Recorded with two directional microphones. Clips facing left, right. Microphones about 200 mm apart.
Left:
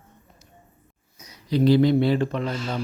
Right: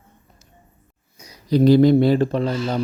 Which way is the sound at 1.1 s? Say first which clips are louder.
Right 5 dB; 35° right (ahead or behind).